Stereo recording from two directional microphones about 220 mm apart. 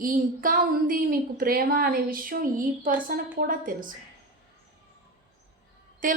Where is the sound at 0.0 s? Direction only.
40° right (ahead or behind).